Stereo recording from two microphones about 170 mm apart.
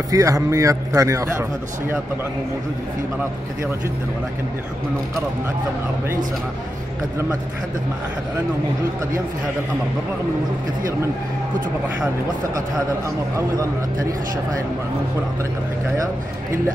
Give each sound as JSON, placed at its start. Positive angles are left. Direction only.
{"t": 0.1, "sound": "a man's voice", "side_deg": -20}